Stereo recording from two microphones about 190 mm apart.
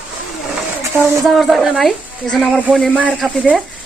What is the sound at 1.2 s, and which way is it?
Speech, centre (ahead or behind).